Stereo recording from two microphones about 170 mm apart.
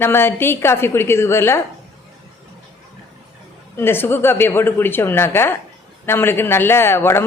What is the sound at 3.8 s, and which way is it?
Speech, 15° left (ahead or behind).